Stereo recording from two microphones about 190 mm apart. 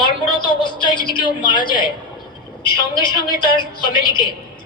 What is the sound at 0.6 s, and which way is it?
A woman's voice, 25° left (ahead or behind).